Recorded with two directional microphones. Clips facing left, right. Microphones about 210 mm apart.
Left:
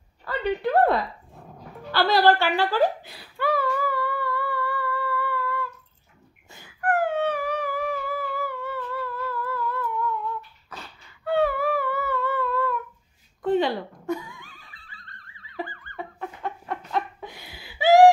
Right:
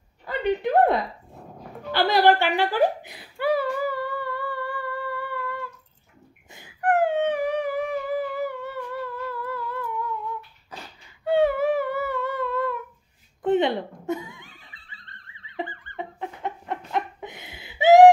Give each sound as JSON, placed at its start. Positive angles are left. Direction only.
{"t": 0.2, "sound": "speech", "side_deg": -15}
{"t": 4.6, "sound": "humming", "side_deg": -20}
{"t": 6.5, "sound": "a sound", "side_deg": -20}
{"t": 11.2, "sound": "humming", "side_deg": -20}
{"t": 13.4, "sound": "laughter", "side_deg": -20}